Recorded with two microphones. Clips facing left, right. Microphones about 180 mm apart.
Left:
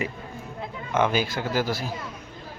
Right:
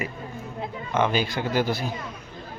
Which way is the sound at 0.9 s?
10° left (ahead or behind).